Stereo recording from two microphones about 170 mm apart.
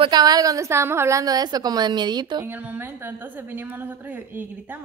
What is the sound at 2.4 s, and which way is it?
A woman's voice, 10° right (ahead or behind).